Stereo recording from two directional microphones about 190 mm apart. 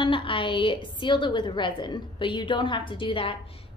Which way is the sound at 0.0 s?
25° left (ahead or behind).